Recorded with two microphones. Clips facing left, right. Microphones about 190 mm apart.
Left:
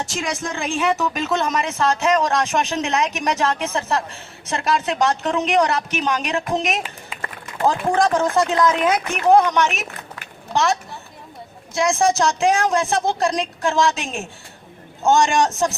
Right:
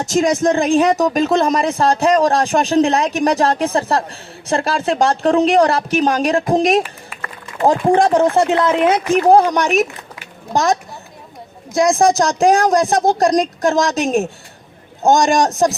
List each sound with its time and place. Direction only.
0.0 s speech: 40° right (ahead or behind)
6.8 s a sound: 20° left (ahead or behind)
7.6 s speech: 35° right (ahead or behind)